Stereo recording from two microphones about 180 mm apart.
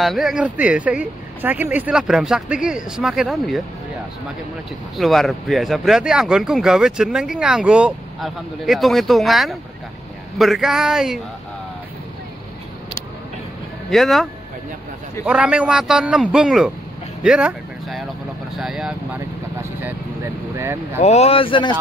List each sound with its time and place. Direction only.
0.0 s speech: centre (ahead or behind)
4.9 s speech: centre (ahead or behind)
13.8 s speech: centre (ahead or behind); by 20.8 s 15° right (ahead or behind)
21.0 s speech: 35° left (ahead or behind)